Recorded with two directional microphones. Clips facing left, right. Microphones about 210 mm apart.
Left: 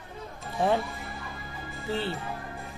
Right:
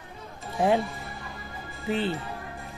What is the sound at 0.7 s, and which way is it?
Music, centre (ahead or behind).